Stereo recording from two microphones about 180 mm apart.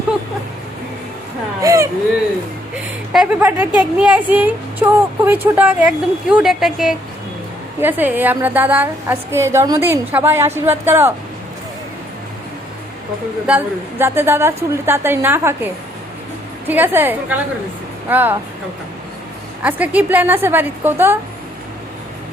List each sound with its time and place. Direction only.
1.6 s whimper: 15° right (ahead or behind)
2.7 s a sound: 5° right (ahead or behind)
3.4 s speech: 10° right (ahead or behind)
14.0 s speech: 15° right (ahead or behind)
16.6 s speech: 10° right (ahead or behind)
19.6 s speech: 10° right (ahead or behind)